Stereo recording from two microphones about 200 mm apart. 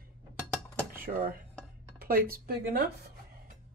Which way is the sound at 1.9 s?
50° right (ahead or behind).